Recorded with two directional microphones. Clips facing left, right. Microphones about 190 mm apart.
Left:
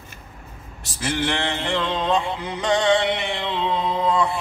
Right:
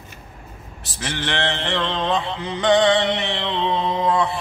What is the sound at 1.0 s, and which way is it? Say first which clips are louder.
Mantra: left 1 dB; 10° left (ahead or behind).